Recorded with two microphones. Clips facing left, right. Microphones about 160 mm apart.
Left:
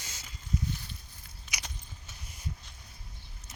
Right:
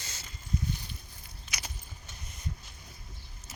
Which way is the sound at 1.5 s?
15° left (ahead or behind).